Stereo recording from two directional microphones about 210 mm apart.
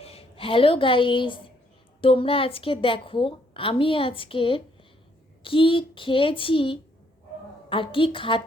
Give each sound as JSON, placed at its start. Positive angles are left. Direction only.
{"t": 0.0, "sound": "a woman's voice", "side_deg": 30}